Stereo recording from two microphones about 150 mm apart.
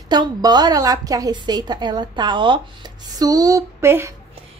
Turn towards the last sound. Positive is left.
turn(degrees=-15)  # may be behind; listen again after turning